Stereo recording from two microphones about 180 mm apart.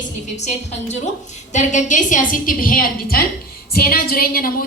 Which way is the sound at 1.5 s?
40° left (ahead or behind).